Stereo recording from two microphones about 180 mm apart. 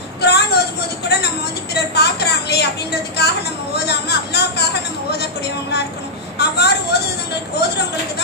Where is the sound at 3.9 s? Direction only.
65° left (ahead or behind).